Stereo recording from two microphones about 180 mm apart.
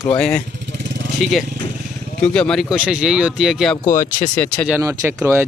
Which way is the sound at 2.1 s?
5° left (ahead or behind).